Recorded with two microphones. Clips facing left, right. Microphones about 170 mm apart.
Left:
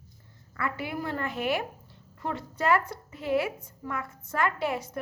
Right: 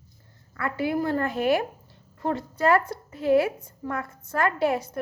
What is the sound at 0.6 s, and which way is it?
A woman's voice, 35° right (ahead or behind).